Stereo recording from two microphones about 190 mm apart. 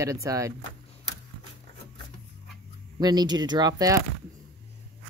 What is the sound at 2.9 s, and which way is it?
Speech, 20° right (ahead or behind).